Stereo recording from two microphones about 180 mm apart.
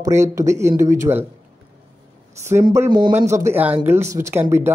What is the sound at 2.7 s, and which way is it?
Speech, 15° right (ahead or behind).